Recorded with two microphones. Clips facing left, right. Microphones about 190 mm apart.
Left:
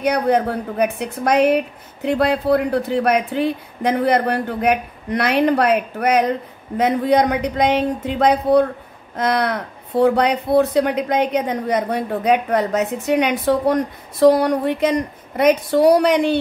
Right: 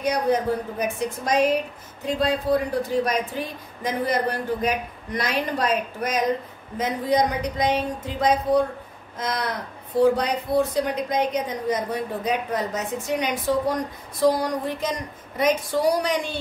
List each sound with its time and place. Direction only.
0.0 s speech: 65° left (ahead or behind)